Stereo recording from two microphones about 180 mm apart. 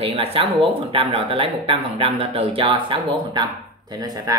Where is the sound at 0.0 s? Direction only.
30° right (ahead or behind).